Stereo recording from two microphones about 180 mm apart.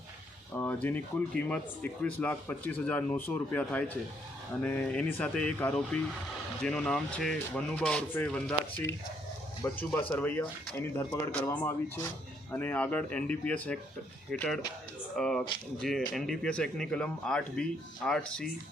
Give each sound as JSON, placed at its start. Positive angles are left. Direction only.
{"t": 0.5, "sound": "speech", "side_deg": 10}